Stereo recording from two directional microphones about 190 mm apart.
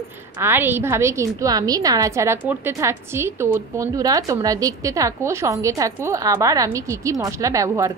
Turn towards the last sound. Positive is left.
turn(degrees=-15)  # may be behind; listen again after turning